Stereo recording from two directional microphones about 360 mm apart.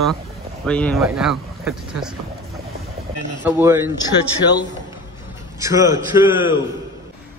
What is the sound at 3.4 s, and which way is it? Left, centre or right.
Speech, centre.